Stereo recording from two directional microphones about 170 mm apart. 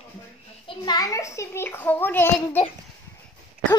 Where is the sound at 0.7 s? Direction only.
25° left (ahead or behind).